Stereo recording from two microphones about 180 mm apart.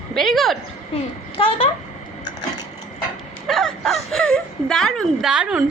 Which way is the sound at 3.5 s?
Centre (ahead or behind).